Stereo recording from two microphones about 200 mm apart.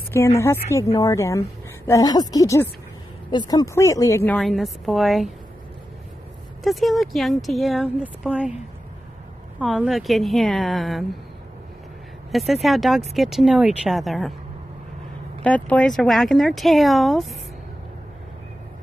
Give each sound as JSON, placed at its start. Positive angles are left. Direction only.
{"t": 0.1, "sound": "a woman's voice", "side_deg": 15}
{"t": 6.6, "sound": "speech", "side_deg": 0}
{"t": 9.6, "sound": "speech", "side_deg": 0}
{"t": 12.3, "sound": "speech", "side_deg": 0}
{"t": 15.4, "sound": "speech", "side_deg": 5}